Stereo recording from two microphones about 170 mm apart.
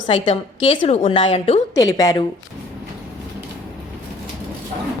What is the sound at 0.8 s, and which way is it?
Speech, 50° left (ahead or behind).